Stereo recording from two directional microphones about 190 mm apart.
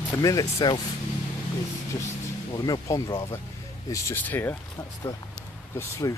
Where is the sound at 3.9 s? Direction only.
10° left (ahead or behind).